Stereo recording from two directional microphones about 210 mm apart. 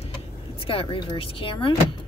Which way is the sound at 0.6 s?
25° left (ahead or behind).